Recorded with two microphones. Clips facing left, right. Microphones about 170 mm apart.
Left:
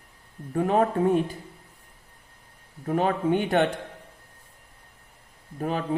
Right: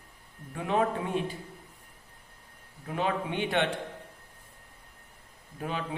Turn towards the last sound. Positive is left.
turn(degrees=40)  # may be behind; listen again after turning